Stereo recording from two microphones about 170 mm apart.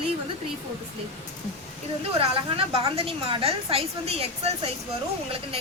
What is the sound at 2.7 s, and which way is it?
A woman's voice, 35° right (ahead or behind).